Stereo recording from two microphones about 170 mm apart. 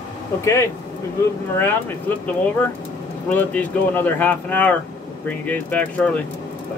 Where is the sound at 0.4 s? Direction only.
15° left (ahead or behind).